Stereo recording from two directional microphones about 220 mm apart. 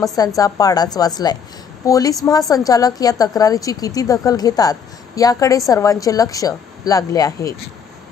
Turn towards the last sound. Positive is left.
turn(degrees=15)  # may be behind; listen again after turning